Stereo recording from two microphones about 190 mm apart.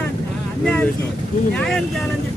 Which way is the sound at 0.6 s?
5° left (ahead or behind).